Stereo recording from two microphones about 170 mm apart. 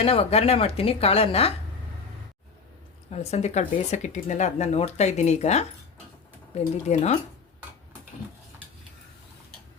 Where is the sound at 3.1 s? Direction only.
40° left (ahead or behind).